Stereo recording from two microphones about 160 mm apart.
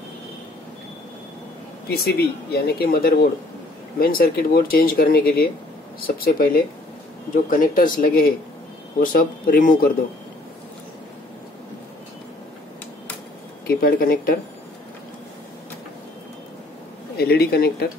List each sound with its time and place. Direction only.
1.9 s speech: 85° left; by 9.9 s 60° left (ahead or behind)
13.7 s speech: 65° left (ahead or behind)
17.2 s speech: 75° left (ahead or behind)